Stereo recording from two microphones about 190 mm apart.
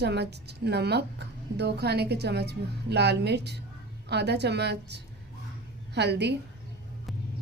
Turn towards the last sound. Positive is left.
turn(degrees=-65)  # may be behind; listen again after turning